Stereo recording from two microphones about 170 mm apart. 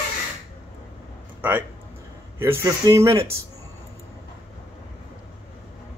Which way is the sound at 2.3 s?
15° right (ahead or behind).